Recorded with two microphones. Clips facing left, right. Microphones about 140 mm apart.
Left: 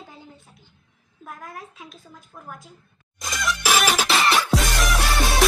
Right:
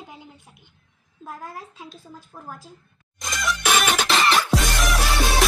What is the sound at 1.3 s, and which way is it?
Speech, 30° right (ahead or behind).